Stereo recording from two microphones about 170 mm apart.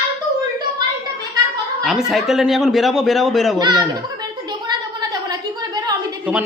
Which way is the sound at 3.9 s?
25° right (ahead or behind).